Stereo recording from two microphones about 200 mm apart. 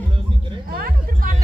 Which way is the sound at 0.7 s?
45° right (ahead or behind).